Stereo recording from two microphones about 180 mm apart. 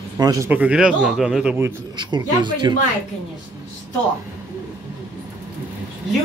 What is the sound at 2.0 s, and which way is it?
Speech, 25° right (ahead or behind).